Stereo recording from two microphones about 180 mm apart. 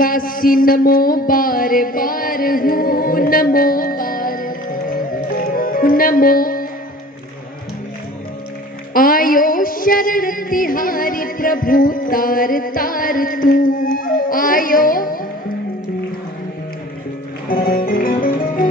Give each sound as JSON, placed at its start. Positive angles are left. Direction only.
{"t": 0.0, "sound": "mantra", "side_deg": 50}
{"t": 5.4, "sound": "music", "side_deg": 50}
{"t": 8.9, "sound": "a sound", "side_deg": 50}
{"t": 17.5, "sound": "music", "side_deg": 55}